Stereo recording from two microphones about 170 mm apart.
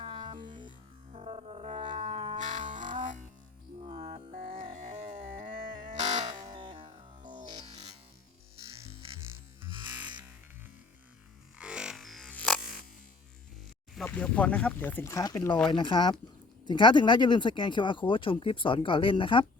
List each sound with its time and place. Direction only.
0.0 s music: 30° right (ahead or behind)
2.4 s music: 50° right (ahead or behind)
6.3 s music: 25° right (ahead or behind)
9.6 s music: 30° right (ahead or behind)
11.5 s music: 5° right (ahead or behind)
13.9 s speech: 5° left (ahead or behind)
15.7 s speech: 25° left (ahead or behind)